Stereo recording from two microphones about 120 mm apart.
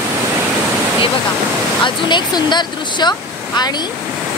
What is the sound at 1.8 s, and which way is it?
Speech, 40° left (ahead or behind).